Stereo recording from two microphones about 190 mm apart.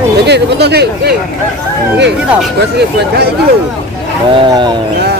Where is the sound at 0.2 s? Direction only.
60° right (ahead or behind).